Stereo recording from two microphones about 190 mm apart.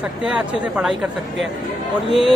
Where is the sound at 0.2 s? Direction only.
5° right (ahead or behind).